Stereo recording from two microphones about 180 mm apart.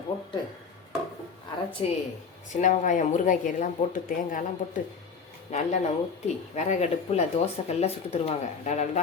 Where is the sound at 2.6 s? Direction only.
45° left (ahead or behind).